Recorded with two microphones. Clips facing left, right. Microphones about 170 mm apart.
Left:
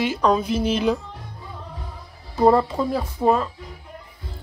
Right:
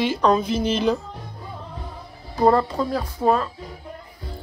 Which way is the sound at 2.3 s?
5° left (ahead or behind).